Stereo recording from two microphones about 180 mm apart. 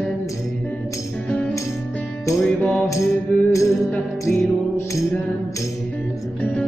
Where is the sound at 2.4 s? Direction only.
5° left (ahead or behind).